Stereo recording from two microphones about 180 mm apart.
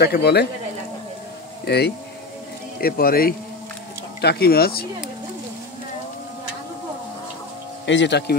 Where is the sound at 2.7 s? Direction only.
55° left (ahead or behind).